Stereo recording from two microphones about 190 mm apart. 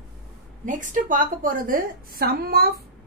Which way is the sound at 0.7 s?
40° right (ahead or behind).